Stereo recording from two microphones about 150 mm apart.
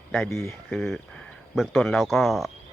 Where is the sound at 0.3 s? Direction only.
20° left (ahead or behind).